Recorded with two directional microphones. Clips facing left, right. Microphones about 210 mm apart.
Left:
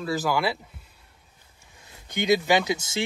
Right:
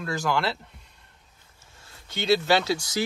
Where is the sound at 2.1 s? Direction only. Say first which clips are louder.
Left 1 dB; 15° left (ahead or behind).